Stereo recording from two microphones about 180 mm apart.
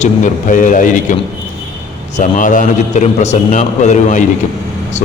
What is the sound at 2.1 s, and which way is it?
A man's voice, 45° left (ahead or behind).